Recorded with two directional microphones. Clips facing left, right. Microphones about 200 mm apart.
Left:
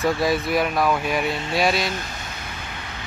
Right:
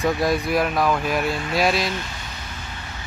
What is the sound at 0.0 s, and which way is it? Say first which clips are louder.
Speech: even; centre (ahead or behind).